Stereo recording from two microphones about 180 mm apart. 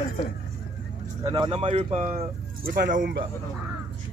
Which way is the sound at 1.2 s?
25° right (ahead or behind).